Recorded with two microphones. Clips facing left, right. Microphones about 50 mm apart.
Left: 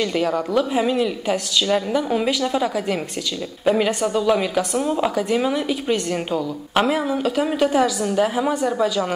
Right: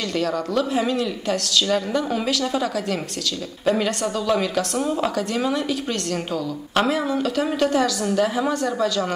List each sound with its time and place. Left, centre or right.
0.1 s speech: centre